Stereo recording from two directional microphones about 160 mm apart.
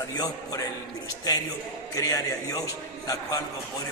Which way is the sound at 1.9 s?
20° left (ahead or behind).